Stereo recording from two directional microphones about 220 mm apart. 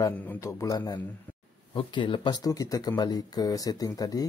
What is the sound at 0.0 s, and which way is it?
Speech, 10° left (ahead or behind).